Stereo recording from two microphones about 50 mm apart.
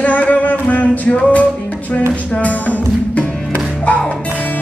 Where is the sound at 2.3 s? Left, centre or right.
Left.